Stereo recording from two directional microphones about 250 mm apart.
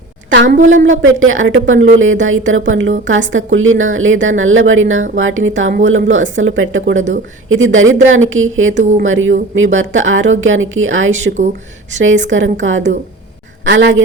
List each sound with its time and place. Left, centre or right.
0.4 s a woman's voice: right
0.7 s a woman's voice: right
8.8 s a woman's voice: right
9.0 s a woman's voice: right